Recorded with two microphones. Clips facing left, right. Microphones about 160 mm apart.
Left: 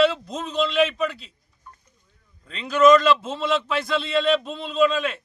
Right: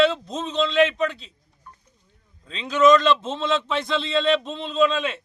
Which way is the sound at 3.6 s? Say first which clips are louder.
Even; 20° right (ahead or behind).